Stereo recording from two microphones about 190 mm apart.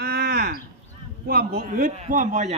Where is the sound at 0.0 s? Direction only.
55° right (ahead or behind).